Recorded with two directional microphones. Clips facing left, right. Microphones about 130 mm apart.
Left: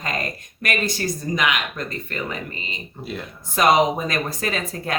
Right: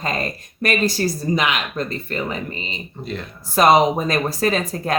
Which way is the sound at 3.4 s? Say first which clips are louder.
Right 3 dB; 35° right (ahead or behind).